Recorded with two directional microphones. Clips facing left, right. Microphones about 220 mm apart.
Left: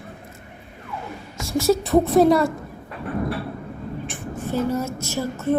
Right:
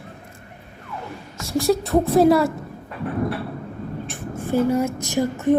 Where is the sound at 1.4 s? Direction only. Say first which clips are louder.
Even; centre (ahead or behind).